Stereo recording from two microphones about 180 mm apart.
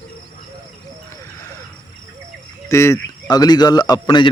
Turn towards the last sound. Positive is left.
turn(degrees=20)  # may be behind; listen again after turning